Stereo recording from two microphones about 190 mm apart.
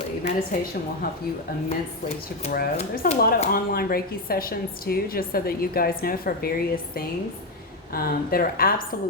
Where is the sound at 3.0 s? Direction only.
50° left (ahead or behind).